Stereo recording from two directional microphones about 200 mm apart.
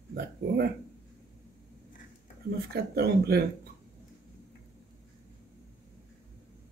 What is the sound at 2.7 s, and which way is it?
Speech, 50° right (ahead or behind).